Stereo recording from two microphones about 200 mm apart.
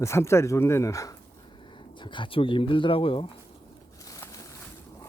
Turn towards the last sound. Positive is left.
turn(degrees=15)  # may be behind; listen again after turning